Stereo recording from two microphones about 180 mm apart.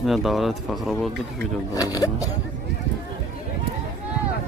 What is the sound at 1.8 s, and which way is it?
Speech, 20° left (ahead or behind).